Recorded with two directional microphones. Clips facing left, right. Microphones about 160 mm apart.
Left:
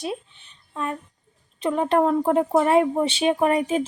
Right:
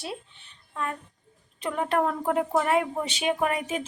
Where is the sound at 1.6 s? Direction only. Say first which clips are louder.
Left 6 dB; 25° left (ahead or behind).